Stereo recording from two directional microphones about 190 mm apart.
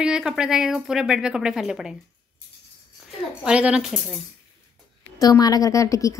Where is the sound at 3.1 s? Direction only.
5° right (ahead or behind).